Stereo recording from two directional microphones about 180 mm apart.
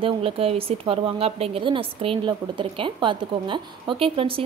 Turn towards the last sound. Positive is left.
turn(degrees=-30)  # may be behind; listen again after turning